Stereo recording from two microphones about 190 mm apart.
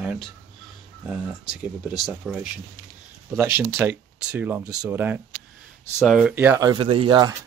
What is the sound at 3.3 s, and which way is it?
Speech, 10° right (ahead or behind).